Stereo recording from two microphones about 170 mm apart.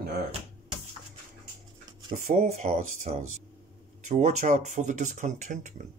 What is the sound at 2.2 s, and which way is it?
Speech, 45° right (ahead or behind).